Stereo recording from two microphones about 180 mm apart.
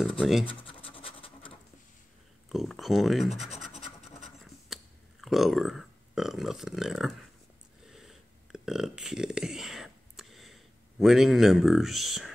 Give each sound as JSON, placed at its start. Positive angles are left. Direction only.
{"t": 0.2, "sound": "speech", "side_deg": 0}
{"t": 0.5, "sound": "scratch", "side_deg": 30}
{"t": 2.5, "sound": "scratch", "side_deg": 0}
{"t": 5.2, "sound": "speech", "side_deg": 0}
{"t": 7.9, "sound": "burping", "side_deg": 0}